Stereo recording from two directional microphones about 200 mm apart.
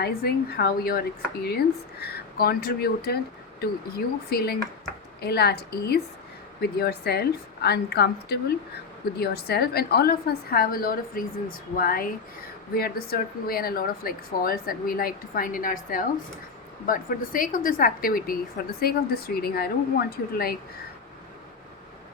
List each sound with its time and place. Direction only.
0.5 s a woman's voice: 50° left (ahead or behind)